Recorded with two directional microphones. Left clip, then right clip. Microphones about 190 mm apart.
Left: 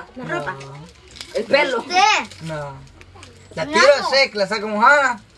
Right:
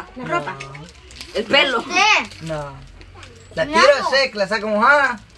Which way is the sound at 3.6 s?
15° left (ahead or behind).